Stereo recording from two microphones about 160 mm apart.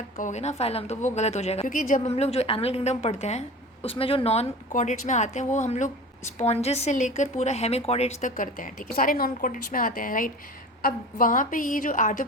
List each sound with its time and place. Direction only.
0.2 s a woman's voice: 45° left (ahead or behind)